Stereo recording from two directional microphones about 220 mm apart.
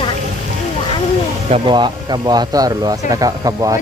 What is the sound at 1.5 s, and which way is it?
Speech, 20° right (ahead or behind).